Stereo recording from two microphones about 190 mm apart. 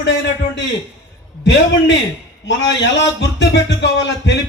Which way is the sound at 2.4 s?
70° left (ahead or behind).